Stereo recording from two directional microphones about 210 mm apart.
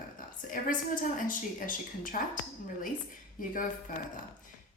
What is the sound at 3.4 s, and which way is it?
Speech, 40° left (ahead or behind).